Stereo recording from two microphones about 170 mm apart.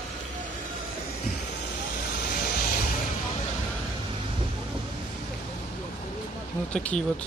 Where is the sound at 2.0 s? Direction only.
65° left (ahead or behind).